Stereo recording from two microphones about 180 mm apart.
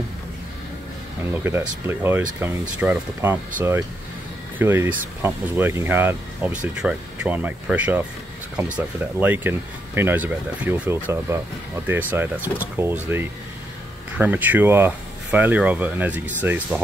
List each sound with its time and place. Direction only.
1.3 s speech: 15° right (ahead or behind)